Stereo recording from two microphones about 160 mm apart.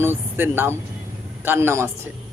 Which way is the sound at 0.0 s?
15° right (ahead or behind).